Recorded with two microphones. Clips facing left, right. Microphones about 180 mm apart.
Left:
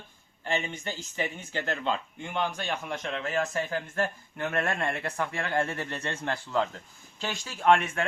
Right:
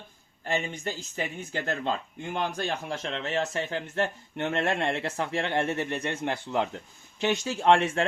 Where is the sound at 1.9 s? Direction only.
40° right (ahead or behind).